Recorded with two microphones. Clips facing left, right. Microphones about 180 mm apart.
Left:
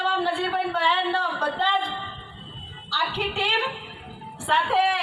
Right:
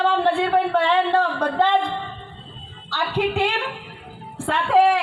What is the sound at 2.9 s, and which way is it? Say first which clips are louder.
Speech: right 6 dB; 55° right (ahead or behind).